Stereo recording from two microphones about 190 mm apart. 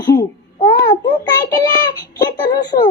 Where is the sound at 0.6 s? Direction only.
30° left (ahead or behind).